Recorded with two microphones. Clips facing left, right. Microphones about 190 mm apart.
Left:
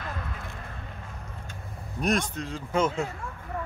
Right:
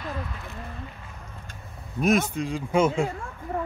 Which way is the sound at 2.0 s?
5° right (ahead or behind).